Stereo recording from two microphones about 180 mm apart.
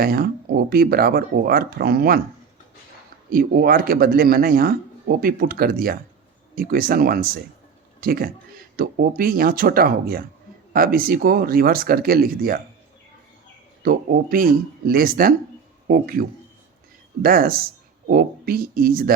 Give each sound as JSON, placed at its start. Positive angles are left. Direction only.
{"t": 0.0, "sound": "speech", "side_deg": -55}
{"t": 3.2, "sound": "speech", "side_deg": -55}
{"t": 13.8, "sound": "speech", "side_deg": -55}
{"t": 17.2, "sound": "speech", "side_deg": -55}